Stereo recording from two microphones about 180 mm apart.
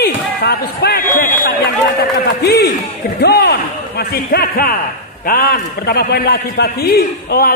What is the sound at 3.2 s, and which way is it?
A man's voice, 65° left (ahead or behind).